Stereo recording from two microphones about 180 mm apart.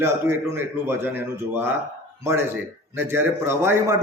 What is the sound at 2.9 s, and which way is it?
A man's voice, 10° right (ahead or behind).